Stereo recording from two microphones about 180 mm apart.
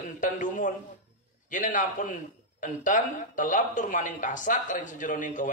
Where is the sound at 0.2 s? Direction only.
45° left (ahead or behind).